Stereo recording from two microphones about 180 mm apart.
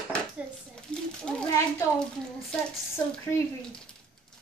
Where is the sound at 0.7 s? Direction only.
5° left (ahead or behind).